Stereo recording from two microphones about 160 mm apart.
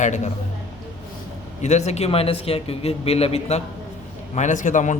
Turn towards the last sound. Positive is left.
turn(degrees=50)  # may be behind; listen again after turning